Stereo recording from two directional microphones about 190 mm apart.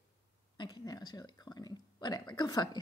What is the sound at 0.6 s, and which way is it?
A woman's voice, 20° left (ahead or behind).